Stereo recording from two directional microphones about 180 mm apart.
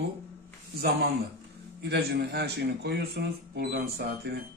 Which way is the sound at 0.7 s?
60° right (ahead or behind).